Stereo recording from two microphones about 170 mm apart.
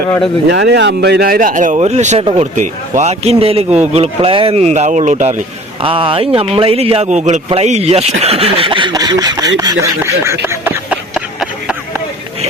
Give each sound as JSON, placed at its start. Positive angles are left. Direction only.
{"t": 0.5, "sound": "speech", "side_deg": -90}
{"t": 5.8, "sound": "speech", "side_deg": -30}
{"t": 10.4, "sound": "a sound", "side_deg": -10}